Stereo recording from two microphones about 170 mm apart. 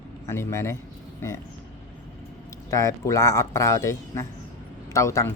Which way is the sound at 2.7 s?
20° left (ahead or behind).